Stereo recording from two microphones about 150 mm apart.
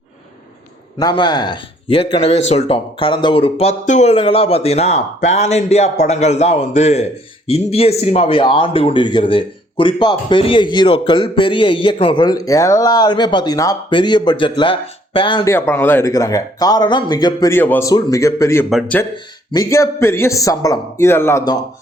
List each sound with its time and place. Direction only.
0.9 s speech: 30° left (ahead or behind)
15.4 s speech: 15° left (ahead or behind)
17.5 s speech: 15° left (ahead or behind)
18.7 s speech: centre (ahead or behind)
19.1 s speech: 30° left (ahead or behind)
19.7 s speech: 20° left (ahead or behind)